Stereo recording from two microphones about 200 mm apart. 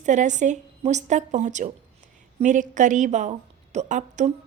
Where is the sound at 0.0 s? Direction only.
40° right (ahead or behind).